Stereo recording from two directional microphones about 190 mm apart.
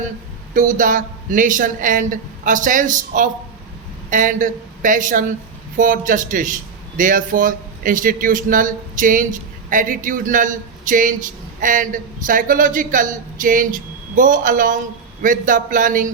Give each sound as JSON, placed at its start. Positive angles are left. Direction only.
{"t": 0.5, "sound": "a man's voice", "side_deg": -45}